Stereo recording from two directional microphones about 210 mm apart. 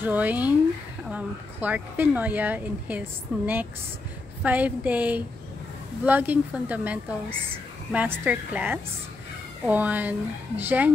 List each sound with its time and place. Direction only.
0.0 s speech: 10° right (ahead or behind)